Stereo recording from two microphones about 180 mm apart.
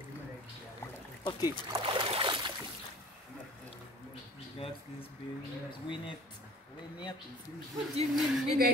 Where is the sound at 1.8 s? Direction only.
30° right (ahead or behind).